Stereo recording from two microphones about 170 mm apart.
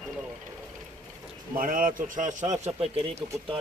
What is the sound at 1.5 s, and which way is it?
A man's voice, 55° right (ahead or behind).